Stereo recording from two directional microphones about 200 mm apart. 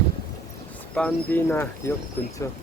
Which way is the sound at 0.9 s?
5° left (ahead or behind).